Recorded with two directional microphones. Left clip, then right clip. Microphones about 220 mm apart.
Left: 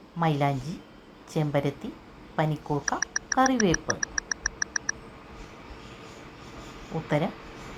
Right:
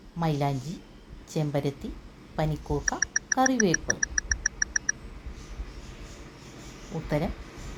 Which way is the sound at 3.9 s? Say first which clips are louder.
Right 2 dB; 15° right (ahead or behind).